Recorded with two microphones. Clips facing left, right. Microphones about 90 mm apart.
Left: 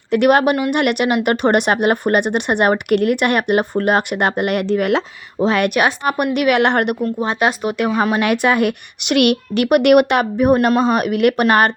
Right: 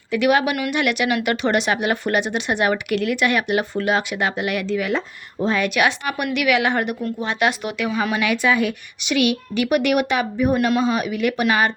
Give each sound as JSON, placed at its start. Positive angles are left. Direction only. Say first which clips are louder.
{"t": 0.1, "sound": "speech", "louder": "left 5 dB", "side_deg": 55}
{"t": 5.7, "sound": "a woman's voice", "louder": "left 4 dB", "side_deg": 40}
{"t": 7.0, "sound": "speech", "louder": "left 4 dB", "side_deg": 35}
{"t": 7.8, "sound": "a woman's voice", "louder": "left 6 dB", "side_deg": 50}